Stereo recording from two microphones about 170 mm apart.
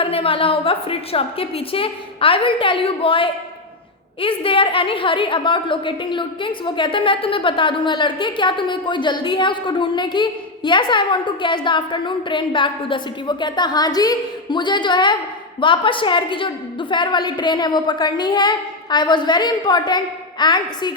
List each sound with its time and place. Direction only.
0.0 s a woman's voice: 35° left (ahead or behind)